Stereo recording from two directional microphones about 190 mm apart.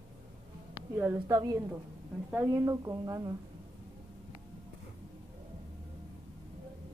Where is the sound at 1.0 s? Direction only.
15° right (ahead or behind).